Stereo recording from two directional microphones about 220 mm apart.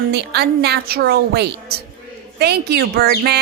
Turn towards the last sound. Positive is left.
turn(degrees=-45)  # may be behind; listen again after turning